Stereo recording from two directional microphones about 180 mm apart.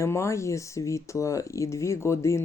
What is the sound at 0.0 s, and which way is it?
Speech, 15° left (ahead or behind).